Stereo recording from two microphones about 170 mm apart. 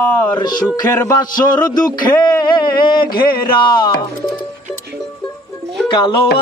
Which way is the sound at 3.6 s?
25° left (ahead or behind).